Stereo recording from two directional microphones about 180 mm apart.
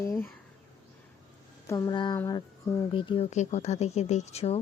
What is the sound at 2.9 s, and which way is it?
Speech, 30° left (ahead or behind).